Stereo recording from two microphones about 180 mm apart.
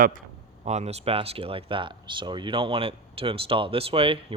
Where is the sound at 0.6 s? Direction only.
35° right (ahead or behind).